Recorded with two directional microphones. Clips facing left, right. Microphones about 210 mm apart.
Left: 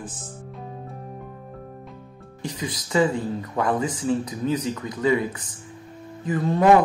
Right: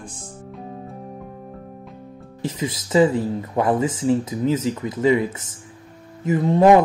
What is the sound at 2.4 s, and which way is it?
Speech, 25° right (ahead or behind).